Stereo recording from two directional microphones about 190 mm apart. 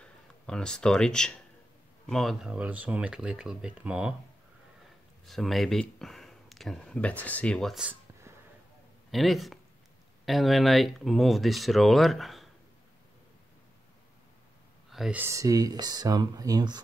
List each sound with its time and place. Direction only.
0.0 s speech: 5° left (ahead or behind)
5.2 s speech: centre (ahead or behind)
14.9 s speech: 5° right (ahead or behind); by 16.8 s 20° right (ahead or behind)